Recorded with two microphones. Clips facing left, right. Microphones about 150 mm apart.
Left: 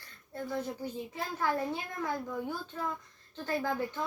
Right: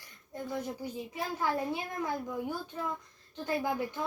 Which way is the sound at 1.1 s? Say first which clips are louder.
Even; 15° right (ahead or behind).